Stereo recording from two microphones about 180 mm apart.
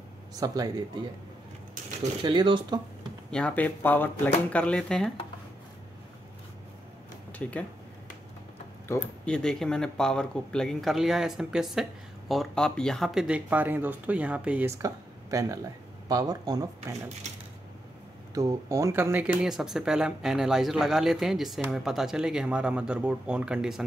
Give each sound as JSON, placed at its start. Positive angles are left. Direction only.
{"t": 0.4, "sound": "speech", "side_deg": -20}
{"t": 2.2, "sound": "speech", "side_deg": -25}
{"t": 3.3, "sound": "speech", "side_deg": 5}
{"t": 7.4, "sound": "speech", "side_deg": 5}
{"t": 8.8, "sound": "speech", "side_deg": 10}
{"t": 14.8, "sound": "speech", "side_deg": -20}
{"t": 18.3, "sound": "speech", "side_deg": -20}